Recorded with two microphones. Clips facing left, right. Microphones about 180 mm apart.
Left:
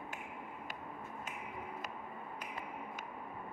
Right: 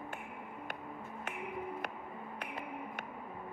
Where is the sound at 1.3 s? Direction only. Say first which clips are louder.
Right 9 dB; 60° right (ahead or behind).